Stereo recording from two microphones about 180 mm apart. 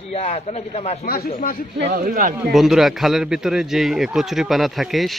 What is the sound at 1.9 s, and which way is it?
Speech, 50° right (ahead or behind).